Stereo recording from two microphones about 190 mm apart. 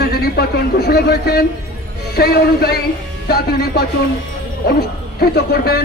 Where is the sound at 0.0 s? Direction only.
55° left (ahead or behind).